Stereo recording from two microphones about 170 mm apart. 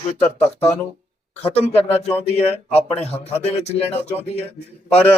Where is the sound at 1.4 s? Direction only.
35° left (ahead or behind).